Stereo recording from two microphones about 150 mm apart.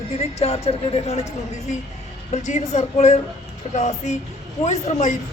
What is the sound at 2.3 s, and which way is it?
A woman's voice, 50° left (ahead or behind).